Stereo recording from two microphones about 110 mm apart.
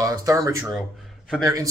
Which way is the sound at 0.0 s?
35° right (ahead or behind).